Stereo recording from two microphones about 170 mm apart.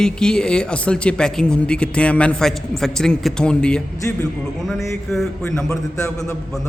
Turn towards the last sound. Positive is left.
turn(degrees=5)  # may be behind; listen again after turning